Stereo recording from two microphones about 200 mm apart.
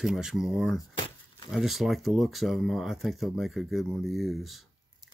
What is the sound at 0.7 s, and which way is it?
Keys jangling, 20° left (ahead or behind).